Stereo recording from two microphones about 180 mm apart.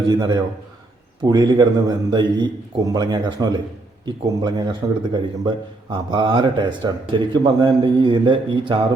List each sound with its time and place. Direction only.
0.1 s a man's voice: 20° right (ahead or behind)